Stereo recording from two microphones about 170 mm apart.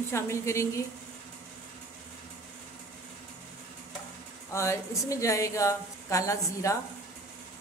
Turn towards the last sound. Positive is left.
turn(degrees=20)  # may be behind; listen again after turning